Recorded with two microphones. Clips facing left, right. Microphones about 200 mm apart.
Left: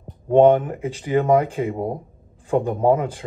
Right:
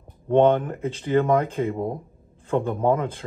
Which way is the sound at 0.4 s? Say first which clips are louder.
Left 4 dB; 15° left (ahead or behind).